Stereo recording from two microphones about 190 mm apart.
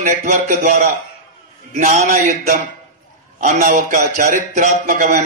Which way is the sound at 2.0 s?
50° right (ahead or behind).